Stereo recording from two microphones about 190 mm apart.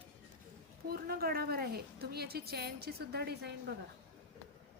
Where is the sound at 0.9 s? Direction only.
50° right (ahead or behind).